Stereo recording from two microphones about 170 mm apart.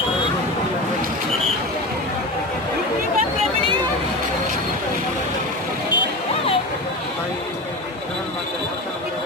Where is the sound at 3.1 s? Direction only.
35° right (ahead or behind).